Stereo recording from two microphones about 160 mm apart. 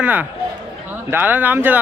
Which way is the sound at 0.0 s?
10° right (ahead or behind).